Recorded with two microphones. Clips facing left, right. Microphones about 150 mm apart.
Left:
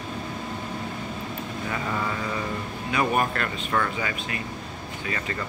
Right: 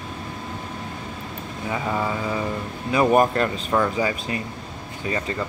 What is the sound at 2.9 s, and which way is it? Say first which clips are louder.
Speech: right 7 dB; 30° right (ahead or behind).